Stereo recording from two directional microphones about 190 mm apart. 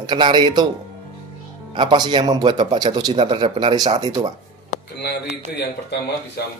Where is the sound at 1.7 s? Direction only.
25° right (ahead or behind).